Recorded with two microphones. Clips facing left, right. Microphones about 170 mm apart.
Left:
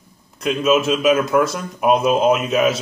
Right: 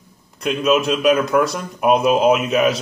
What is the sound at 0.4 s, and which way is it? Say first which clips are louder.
Speech: even; centre (ahead or behind).